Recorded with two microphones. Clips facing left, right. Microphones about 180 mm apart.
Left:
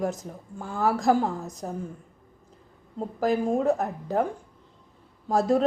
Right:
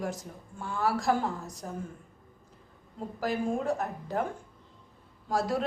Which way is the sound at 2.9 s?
40° left (ahead or behind).